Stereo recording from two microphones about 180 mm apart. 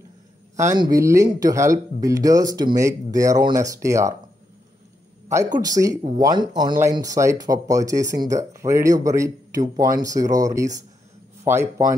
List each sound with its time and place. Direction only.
0.6 s speech: 20° right (ahead or behind)
5.3 s speech: 20° right (ahead or behind)